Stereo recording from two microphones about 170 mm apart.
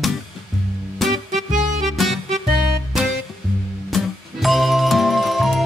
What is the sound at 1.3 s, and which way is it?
Music, 50° right (ahead or behind).